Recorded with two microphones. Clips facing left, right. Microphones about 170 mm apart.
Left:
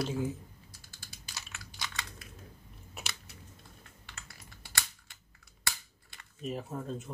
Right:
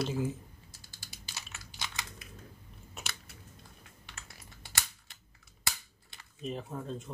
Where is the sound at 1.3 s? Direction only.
20° right (ahead or behind).